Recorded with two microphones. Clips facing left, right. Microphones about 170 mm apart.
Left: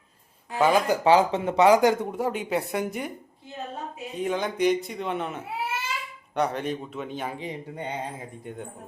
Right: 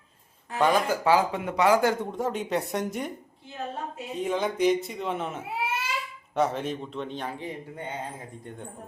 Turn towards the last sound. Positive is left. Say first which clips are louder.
# left 2 dB
turn(degrees=20)  # may be behind; listen again after turning